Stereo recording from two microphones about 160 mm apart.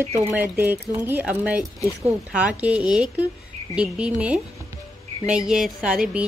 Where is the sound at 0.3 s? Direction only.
10° right (ahead or behind).